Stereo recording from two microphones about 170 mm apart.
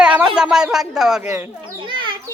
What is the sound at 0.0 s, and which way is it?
Speech, 5° right (ahead or behind).